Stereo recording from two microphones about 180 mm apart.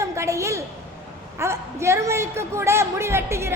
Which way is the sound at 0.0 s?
15° right (ahead or behind).